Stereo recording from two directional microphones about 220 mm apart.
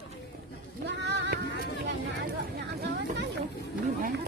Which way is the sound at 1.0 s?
50° right (ahead or behind).